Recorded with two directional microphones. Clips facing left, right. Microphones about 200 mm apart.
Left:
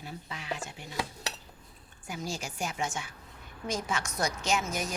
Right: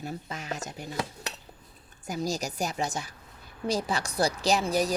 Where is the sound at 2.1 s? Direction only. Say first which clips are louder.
Right 6 dB; 40° right (ahead or behind).